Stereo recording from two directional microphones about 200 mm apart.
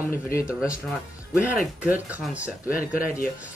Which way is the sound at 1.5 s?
5° right (ahead or behind).